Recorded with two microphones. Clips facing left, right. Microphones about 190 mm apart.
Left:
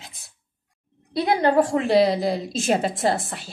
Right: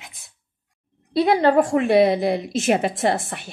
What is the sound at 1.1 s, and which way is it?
A woman's voice, 25° right (ahead or behind).